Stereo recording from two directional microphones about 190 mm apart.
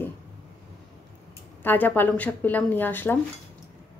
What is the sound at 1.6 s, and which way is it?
A woman's voice, 10° left (ahead or behind).